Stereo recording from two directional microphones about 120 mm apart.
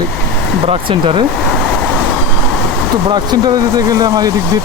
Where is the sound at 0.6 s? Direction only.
55° right (ahead or behind).